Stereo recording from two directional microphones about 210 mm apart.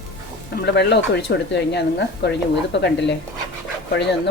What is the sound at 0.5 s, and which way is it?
Speech, 50° left (ahead or behind).